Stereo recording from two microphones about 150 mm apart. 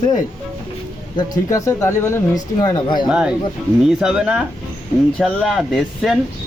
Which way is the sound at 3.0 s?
5° right (ahead or behind).